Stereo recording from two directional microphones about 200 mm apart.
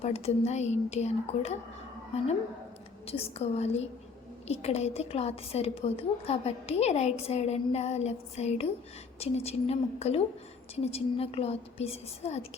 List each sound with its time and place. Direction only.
0.0 s a woman's voice: 30° left (ahead or behind)
3.1 s a woman's voice: 30° left (ahead or behind)